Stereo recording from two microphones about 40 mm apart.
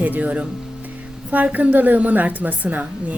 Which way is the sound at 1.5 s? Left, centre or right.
Right.